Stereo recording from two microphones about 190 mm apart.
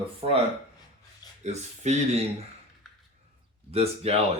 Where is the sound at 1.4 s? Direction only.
35° right (ahead or behind).